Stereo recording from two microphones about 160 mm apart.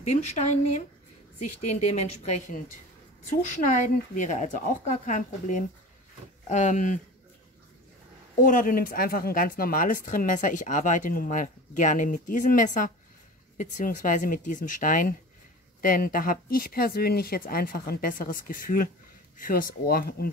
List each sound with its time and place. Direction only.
0.0 s a woman's voice: 45° left (ahead or behind)
8.4 s speech: 55° left (ahead or behind)